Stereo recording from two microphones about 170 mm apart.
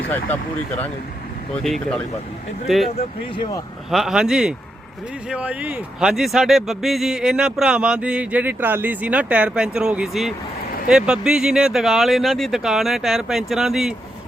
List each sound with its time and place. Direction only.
0.3 s speech: 10° left (ahead or behind)
1.5 s speech: 5° left (ahead or behind)
2.9 s speech: 30° left (ahead or behind)
3.9 s speech: 5° right (ahead or behind)